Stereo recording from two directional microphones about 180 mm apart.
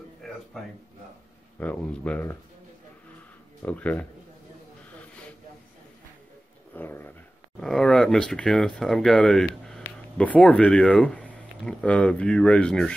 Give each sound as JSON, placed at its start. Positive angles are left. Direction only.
{"t": 0.2, "sound": "a sound", "side_deg": 0}
{"t": 1.6, "sound": "speech", "side_deg": 10}
{"t": 3.6, "sound": "speech", "side_deg": 10}
{"t": 6.7, "sound": "speech", "side_deg": 10}